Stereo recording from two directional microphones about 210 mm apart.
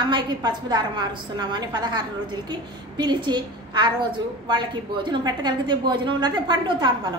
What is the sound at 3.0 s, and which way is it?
A woman's voice, 20° right (ahead or behind).